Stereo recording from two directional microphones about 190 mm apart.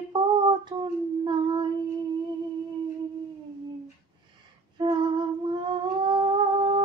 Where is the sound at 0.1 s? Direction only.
25° right (ahead or behind).